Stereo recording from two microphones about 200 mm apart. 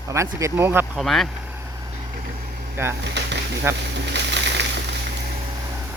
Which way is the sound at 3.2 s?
60° right (ahead or behind).